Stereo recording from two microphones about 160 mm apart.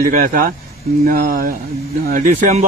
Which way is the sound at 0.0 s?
60° right (ahead or behind).